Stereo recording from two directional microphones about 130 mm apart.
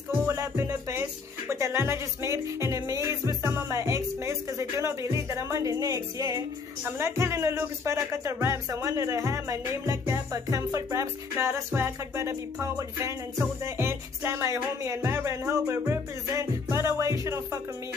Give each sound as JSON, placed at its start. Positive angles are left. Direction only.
{"t": 0.3, "sound": "music", "side_deg": -25}
{"t": 6.8, "sound": "speech", "side_deg": -20}
{"t": 15.0, "sound": "music", "side_deg": -20}